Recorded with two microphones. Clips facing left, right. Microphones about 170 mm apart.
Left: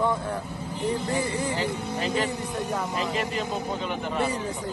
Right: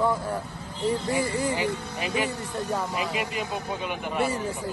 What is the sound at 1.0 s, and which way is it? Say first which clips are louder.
Speech: right 1 dB; 10° right (ahead or behind).